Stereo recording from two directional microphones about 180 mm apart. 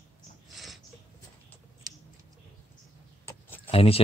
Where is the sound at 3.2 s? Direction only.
15° left (ahead or behind).